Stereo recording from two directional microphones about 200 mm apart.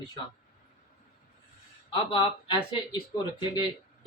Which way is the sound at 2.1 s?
25° left (ahead or behind).